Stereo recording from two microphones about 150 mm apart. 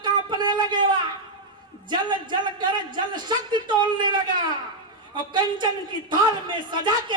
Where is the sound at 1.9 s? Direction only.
30° right (ahead or behind).